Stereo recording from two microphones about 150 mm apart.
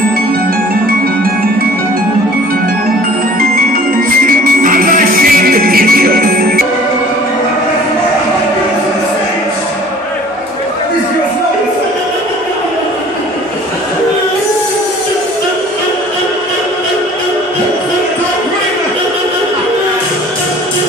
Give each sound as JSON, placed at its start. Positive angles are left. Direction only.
{"t": 4.3, "sound": "music", "side_deg": -70}